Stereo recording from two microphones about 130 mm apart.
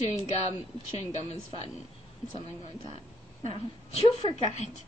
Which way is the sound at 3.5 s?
45° left (ahead or behind).